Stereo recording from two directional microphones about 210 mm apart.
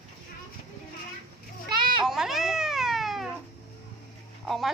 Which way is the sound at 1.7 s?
25° right (ahead or behind).